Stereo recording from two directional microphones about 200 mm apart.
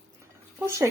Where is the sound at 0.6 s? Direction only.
15° right (ahead or behind).